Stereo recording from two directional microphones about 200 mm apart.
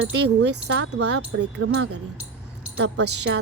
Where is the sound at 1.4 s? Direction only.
70° right (ahead or behind); by 2.0 s 85° right.